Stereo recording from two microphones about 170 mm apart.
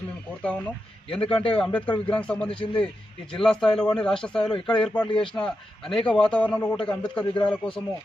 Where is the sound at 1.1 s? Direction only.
5° left (ahead or behind).